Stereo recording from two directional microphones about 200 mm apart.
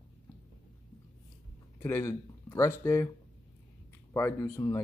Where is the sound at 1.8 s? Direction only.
10° left (ahead or behind).